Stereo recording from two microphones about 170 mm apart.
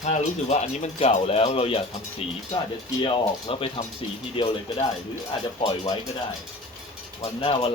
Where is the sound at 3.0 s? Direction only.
30° left (ahead or behind).